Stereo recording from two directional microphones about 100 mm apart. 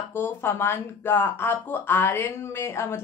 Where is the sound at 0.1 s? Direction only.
25° left (ahead or behind).